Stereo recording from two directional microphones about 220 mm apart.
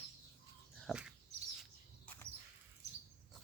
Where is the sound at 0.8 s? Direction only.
Centre (ahead or behind).